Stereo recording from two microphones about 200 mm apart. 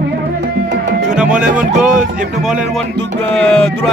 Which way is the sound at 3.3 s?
5° left (ahead or behind).